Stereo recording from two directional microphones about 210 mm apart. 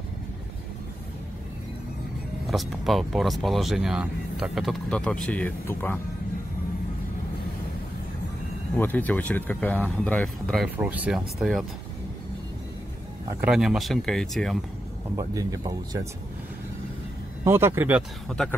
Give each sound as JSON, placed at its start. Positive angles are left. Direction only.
{"t": 2.4, "sound": "speech", "side_deg": 0}
{"t": 8.7, "sound": "speech", "side_deg": 10}
{"t": 13.4, "sound": "speech", "side_deg": -5}
{"t": 15.1, "sound": "speech", "side_deg": -15}
{"t": 17.5, "sound": "speech", "side_deg": -10}
{"t": 18.3, "sound": "speech", "side_deg": 5}